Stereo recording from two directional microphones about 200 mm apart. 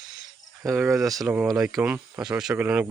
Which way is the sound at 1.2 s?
5° right (ahead or behind).